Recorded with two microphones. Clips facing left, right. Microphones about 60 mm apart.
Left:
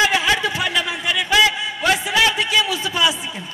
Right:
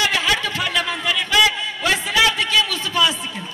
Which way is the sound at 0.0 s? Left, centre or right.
Centre.